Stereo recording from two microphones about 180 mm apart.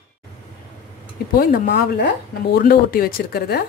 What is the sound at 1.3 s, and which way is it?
Speech, 55° left (ahead or behind).